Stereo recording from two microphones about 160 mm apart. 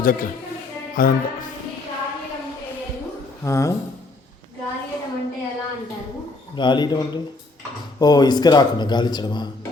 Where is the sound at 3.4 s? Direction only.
20° left (ahead or behind).